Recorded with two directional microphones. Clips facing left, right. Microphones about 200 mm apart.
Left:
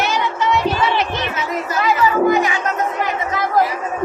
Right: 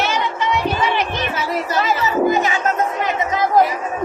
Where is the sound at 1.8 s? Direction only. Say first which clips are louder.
Left 4 dB; 25° right (ahead or behind).